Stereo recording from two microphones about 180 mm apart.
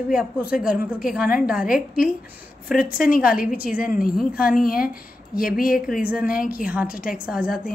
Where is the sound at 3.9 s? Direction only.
50° left (ahead or behind).